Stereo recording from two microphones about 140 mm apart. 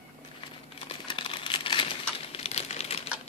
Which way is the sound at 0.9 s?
40° left (ahead or behind).